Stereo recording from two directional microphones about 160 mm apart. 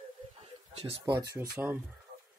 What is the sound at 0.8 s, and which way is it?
Speech, 40° right (ahead or behind).